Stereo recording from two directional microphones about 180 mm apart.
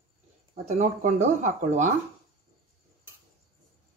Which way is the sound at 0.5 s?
40° right (ahead or behind).